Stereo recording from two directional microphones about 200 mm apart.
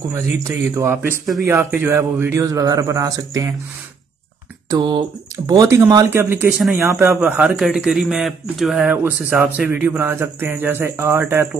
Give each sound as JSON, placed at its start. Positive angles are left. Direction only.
{"t": 0.1, "sound": "a man's voice", "side_deg": -15}
{"t": 4.6, "sound": "a man's voice", "side_deg": -20}
{"t": 6.6, "sound": "speech", "side_deg": 0}
{"t": 6.9, "sound": "a man's voice", "side_deg": -15}